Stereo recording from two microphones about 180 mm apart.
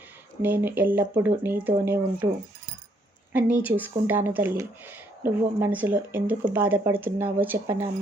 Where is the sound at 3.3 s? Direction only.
10° right (ahead or behind).